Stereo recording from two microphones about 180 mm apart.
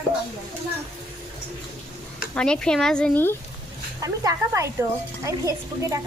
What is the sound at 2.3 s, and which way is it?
A woman's voice, 5° left (ahead or behind).